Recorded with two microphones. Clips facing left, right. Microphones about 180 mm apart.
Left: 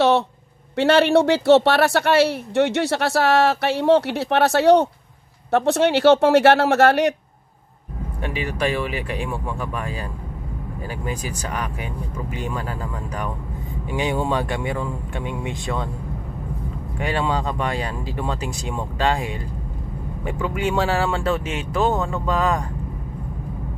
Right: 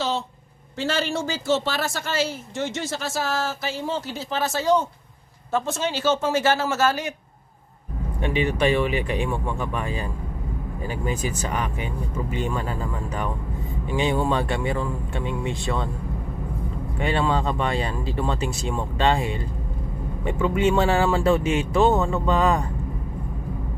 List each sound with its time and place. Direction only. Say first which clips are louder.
0.7 s speech: left 10 dB; 65° left (ahead or behind)
8.2 s speech: right 3 dB; 5° left (ahead or behind)
17.0 s speech: even; 5° left (ahead or behind)